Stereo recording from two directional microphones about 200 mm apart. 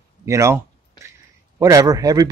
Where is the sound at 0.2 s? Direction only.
15° right (ahead or behind).